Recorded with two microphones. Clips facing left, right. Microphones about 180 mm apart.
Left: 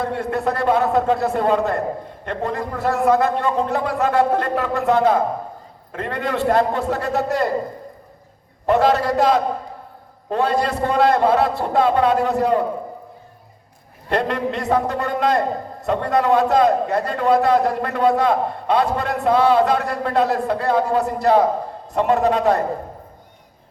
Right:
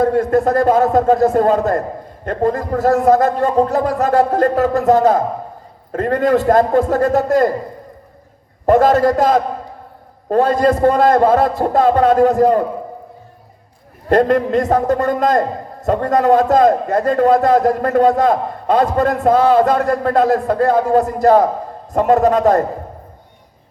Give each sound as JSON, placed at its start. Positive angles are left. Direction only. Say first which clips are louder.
{"t": 0.0, "sound": "a man's voice", "louder": "right 8 dB", "side_deg": -45}
{"t": 8.6, "sound": "a man's voice", "louder": "right 5 dB", "side_deg": -45}
{"t": 14.1, "sound": "a man's voice", "louder": "right 8 dB", "side_deg": -45}